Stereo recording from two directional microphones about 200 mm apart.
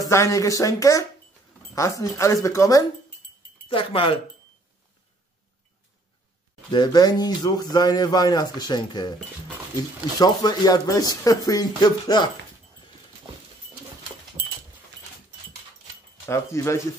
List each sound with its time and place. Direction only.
0.1 s speech: 15° left (ahead or behind)
3.6 s speech: 25° left (ahead or behind)
6.7 s speech: 20° left (ahead or behind)
10.1 s speech: 20° left (ahead or behind)
16.3 s speech: 15° left (ahead or behind)